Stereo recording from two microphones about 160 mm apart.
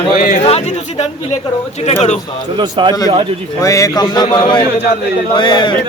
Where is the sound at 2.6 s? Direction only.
30° right (ahead or behind).